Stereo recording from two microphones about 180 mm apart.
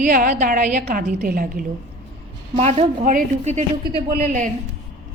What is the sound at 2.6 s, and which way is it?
A woman's voice, 35° right (ahead or behind).